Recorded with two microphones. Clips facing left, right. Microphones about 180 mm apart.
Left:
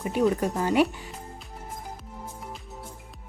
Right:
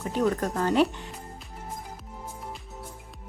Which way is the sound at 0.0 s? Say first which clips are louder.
Left 2 dB; 10° left (ahead or behind).